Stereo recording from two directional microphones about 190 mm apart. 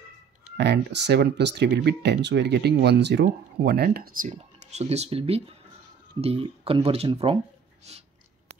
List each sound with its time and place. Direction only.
0.6 s speech: 60° right (ahead or behind)
4.3 s speech: 35° right (ahead or behind)